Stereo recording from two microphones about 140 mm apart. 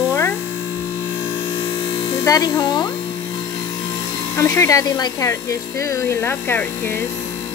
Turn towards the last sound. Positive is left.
turn(degrees=15)  # may be behind; listen again after turning